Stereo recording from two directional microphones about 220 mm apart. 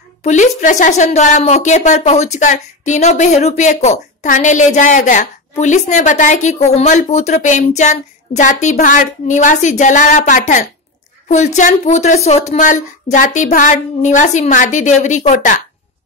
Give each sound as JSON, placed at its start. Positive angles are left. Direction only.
{"t": 0.2, "sound": "speech", "side_deg": 35}